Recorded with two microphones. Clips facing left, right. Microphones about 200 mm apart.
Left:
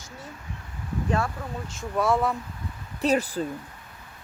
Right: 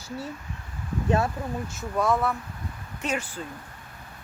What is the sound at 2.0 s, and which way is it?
Speech, 10° left (ahead or behind).